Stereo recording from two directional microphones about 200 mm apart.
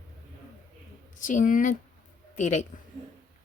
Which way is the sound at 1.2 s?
40° left (ahead or behind).